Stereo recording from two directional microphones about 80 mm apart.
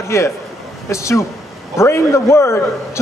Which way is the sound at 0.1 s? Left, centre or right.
Left.